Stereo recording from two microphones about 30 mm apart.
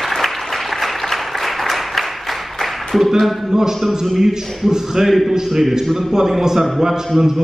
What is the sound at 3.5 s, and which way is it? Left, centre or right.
Speech, centre.